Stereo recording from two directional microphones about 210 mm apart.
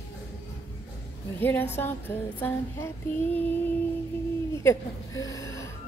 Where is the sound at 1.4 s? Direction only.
10° left (ahead or behind).